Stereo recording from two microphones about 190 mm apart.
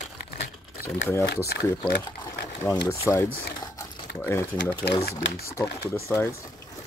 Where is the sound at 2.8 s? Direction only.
15° left (ahead or behind).